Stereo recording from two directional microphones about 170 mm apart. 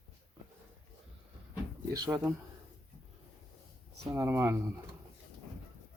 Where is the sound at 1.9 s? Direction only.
20° right (ahead or behind).